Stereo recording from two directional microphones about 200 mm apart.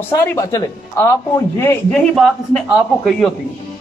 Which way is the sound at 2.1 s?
Centre (ahead or behind).